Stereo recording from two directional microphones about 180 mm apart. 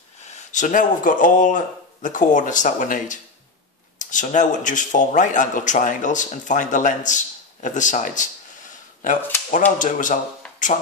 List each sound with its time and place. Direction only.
0.2 s speech: 40° left (ahead or behind)